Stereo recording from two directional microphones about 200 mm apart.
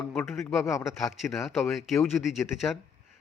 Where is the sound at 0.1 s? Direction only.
Centre (ahead or behind).